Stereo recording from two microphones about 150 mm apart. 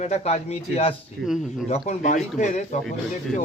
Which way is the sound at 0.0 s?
50° left (ahead or behind).